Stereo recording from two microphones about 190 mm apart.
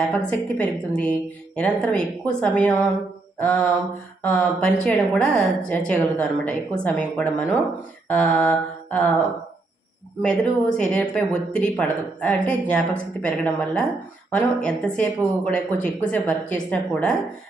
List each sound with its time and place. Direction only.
0.0 s speech: 5° left (ahead or behind)
8.0 s mantra: 10° left (ahead or behind)
10.2 s speech: 5° left (ahead or behind)